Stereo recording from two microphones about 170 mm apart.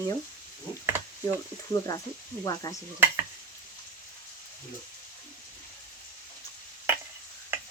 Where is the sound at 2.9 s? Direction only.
15° right (ahead or behind).